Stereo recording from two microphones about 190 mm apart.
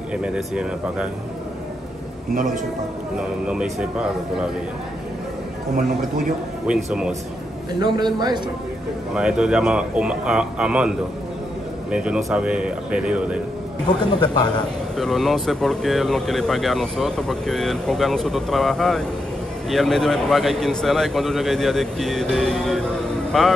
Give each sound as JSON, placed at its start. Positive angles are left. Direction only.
{"t": 0.2, "sound": "speech", "side_deg": -5}
{"t": 2.3, "sound": "a man's voice", "side_deg": -45}
{"t": 3.2, "sound": "speech", "side_deg": -5}
{"t": 5.8, "sound": "a man's voice", "side_deg": -45}
{"t": 6.6, "sound": "speech", "side_deg": -5}
{"t": 7.8, "sound": "a man's voice", "side_deg": -20}
{"t": 9.1, "sound": "speech", "side_deg": -5}
{"t": 11.9, "sound": "speech", "side_deg": -5}
{"t": 13.8, "sound": "speech", "side_deg": 20}
{"t": 15.0, "sound": "speech", "side_deg": 0}